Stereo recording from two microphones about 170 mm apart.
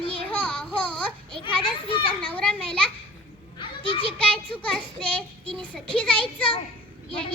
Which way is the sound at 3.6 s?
30° left (ahead or behind).